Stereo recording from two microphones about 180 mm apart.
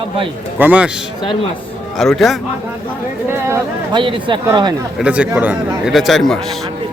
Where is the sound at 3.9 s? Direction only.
25° right (ahead or behind).